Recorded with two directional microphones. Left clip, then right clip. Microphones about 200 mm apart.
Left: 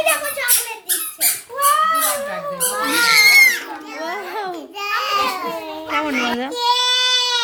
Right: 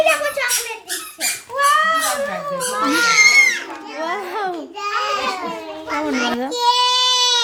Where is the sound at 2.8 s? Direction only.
50° left (ahead or behind).